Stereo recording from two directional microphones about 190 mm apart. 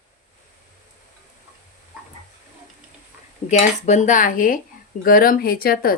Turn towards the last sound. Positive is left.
turn(degrees=50)  # may be behind; listen again after turning